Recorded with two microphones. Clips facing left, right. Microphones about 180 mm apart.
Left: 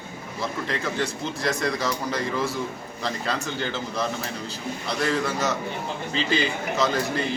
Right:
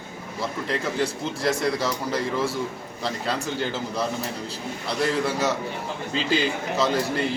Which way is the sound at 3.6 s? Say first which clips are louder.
Right 1 dB; 5° right (ahead or behind).